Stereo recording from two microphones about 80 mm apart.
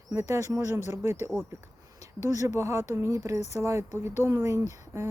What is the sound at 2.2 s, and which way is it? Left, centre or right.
Speech, right.